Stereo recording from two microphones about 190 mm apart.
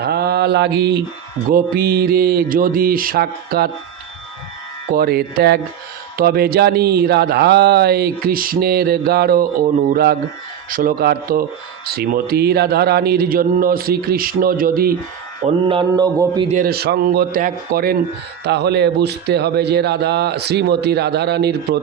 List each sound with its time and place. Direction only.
0.0 s mantra: 55° right (ahead or behind)
1.5 s a man's voice: 50° right (ahead or behind)
4.9 s a man's voice: 55° right (ahead or behind)
15.4 s mantra: 30° right (ahead or behind)
16.5 s a man's voice: 50° right (ahead or behind)
18.4 s speech: 60° right (ahead or behind)